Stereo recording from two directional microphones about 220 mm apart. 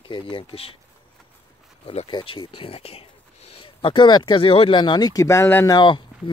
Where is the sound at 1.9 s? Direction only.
25° left (ahead or behind).